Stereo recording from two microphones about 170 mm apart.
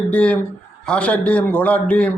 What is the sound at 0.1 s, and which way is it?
A man's voice, 5° left (ahead or behind).